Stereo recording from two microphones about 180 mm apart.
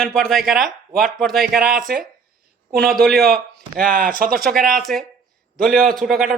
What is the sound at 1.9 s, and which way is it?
Speech, 60° right (ahead or behind).